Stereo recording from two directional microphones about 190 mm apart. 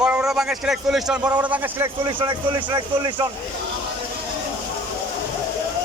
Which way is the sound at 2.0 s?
25° right (ahead or behind).